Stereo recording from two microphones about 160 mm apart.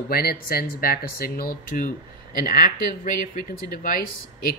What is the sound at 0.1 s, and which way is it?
Speech, 70° left (ahead or behind).